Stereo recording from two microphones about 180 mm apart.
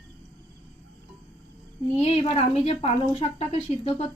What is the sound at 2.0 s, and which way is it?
Speech, 35° left (ahead or behind).